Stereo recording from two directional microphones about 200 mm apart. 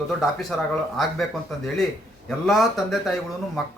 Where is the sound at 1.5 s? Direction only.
Centre (ahead or behind).